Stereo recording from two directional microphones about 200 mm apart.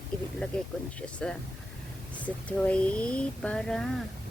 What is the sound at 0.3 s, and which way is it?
Speech, 5° left (ahead or behind).